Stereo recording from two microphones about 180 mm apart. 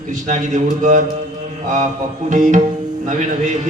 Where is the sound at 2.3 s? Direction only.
45° right (ahead or behind).